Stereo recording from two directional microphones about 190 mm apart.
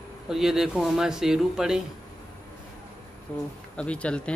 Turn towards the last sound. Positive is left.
turn(degrees=5)  # may be behind; listen again after turning